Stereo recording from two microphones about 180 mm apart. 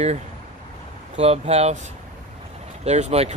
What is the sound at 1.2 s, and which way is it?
Speech, 35° right (ahead or behind).